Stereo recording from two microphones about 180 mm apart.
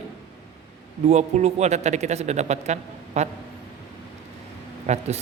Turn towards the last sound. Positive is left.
turn(degrees=-40)  # may be behind; listen again after turning